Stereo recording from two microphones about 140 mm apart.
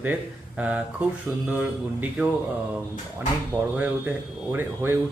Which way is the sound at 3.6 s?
10° right (ahead or behind).